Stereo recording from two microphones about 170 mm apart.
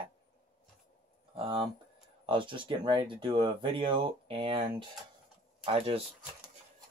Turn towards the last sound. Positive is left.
turn(degrees=-30)  # may be behind; listen again after turning